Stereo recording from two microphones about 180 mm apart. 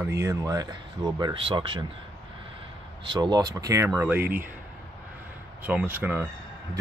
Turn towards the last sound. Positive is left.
turn(degrees=-10)  # may be behind; listen again after turning